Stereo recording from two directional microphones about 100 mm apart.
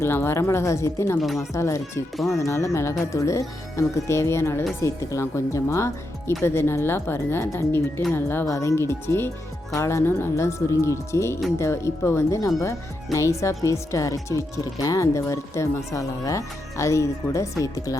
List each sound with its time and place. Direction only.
0.0 s speech: 25° left (ahead or behind)
1.2 s speech: centre (ahead or behind)
1.5 s speech: 30° left (ahead or behind)